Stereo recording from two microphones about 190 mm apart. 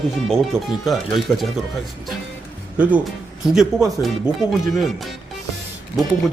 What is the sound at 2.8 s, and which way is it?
Speech, 10° right (ahead or behind).